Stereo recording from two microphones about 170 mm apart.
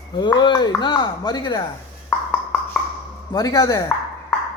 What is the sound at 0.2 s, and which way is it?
Speech, 25° left (ahead or behind).